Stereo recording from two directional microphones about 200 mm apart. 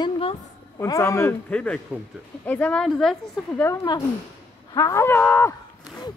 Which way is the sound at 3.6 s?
15° left (ahead or behind).